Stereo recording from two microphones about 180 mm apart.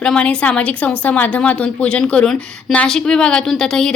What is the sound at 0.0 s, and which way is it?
Speech, 5° left (ahead or behind).